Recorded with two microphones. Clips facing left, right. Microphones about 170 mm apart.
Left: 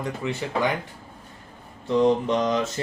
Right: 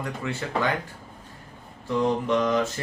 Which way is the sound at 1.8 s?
25° left (ahead or behind).